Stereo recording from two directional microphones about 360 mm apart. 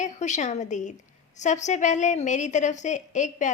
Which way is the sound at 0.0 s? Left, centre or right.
Centre.